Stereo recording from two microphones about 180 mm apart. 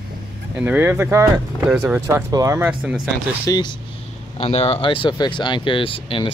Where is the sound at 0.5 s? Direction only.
10° right (ahead or behind).